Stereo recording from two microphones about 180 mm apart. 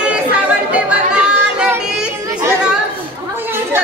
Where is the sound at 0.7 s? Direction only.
5° right (ahead or behind).